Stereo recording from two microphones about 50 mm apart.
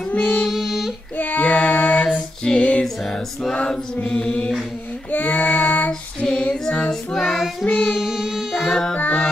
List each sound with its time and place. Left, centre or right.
0.5 s child singing: centre
1.1 s female singing: left
2.8 s music: centre
3.5 s mantra: centre
5.1 s child singing: left
5.9 s child singing: centre
7.2 s child singing: centre
7.6 s child singing: centre
7.9 s child singing: centre
8.6 s child singing: centre
8.9 s music: left